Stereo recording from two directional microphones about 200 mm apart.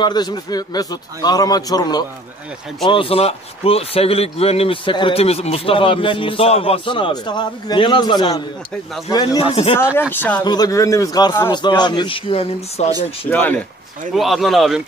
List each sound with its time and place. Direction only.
0.0 s speech: 20° left (ahead or behind)
10.1 s speech: 10° left (ahead or behind)
10.4 s speech: 20° left (ahead or behind)
13.3 s speech: 10° left (ahead or behind)